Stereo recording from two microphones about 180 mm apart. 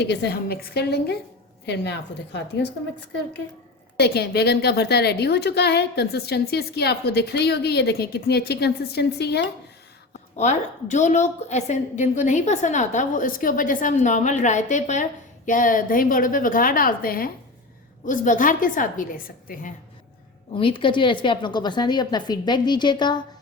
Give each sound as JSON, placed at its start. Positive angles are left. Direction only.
{"t": 0.0, "sound": "a woman's voice", "side_deg": 70}
{"t": 3.9, "sound": "a woman's voice", "side_deg": 65}
{"t": 10.3, "sound": "a woman's voice", "side_deg": 40}
{"t": 20.6, "sound": "a woman's voice", "side_deg": 30}